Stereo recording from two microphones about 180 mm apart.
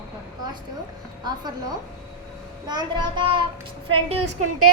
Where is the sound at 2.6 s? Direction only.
25° right (ahead or behind).